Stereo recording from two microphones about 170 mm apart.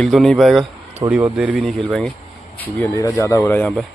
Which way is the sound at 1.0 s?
10° right (ahead or behind).